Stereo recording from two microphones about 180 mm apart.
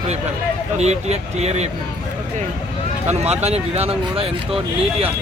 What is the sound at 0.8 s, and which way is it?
Speech, 40° right (ahead or behind).